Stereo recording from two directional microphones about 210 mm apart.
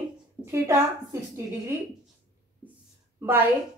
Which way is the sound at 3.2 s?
10° right (ahead or behind).